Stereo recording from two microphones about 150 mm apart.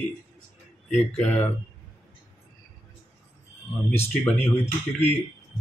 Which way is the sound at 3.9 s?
15° left (ahead or behind).